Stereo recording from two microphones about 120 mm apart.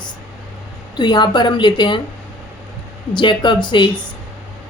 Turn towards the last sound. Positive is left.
turn(degrees=40)  # may be behind; listen again after turning